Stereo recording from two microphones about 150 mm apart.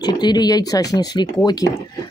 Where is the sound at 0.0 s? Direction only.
30° left (ahead or behind).